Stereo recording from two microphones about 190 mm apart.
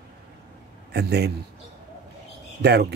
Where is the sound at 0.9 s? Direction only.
60° right (ahead or behind).